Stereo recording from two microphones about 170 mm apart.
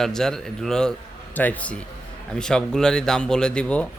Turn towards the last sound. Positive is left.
turn(degrees=5)  # may be behind; listen again after turning